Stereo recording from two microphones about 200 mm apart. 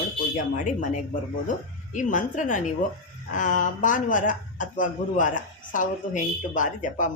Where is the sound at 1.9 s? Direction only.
40° left (ahead or behind).